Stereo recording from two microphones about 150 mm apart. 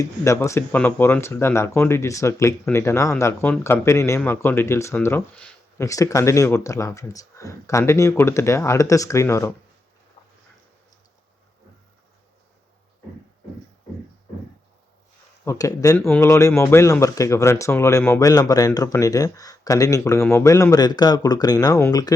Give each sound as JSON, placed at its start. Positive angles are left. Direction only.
{"t": 0.0, "sound": "speech", "side_deg": 20}
{"t": 15.4, "sound": "speech", "side_deg": 20}